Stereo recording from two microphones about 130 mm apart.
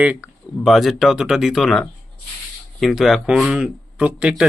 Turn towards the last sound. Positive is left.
turn(degrees=-10)  # may be behind; listen again after turning